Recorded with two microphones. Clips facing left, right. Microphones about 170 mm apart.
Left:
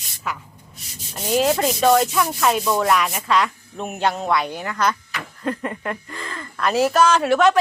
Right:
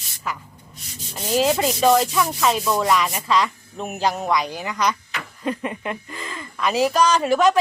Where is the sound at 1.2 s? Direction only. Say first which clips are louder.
Left 1 dB; centre (ahead or behind).